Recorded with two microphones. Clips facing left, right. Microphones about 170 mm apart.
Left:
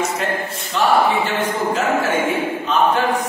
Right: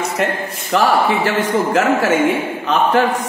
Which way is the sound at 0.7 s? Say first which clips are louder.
Right 1 dB; 90° right.